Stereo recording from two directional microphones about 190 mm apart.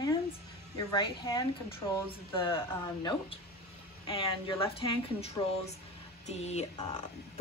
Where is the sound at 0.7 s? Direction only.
20° left (ahead or behind).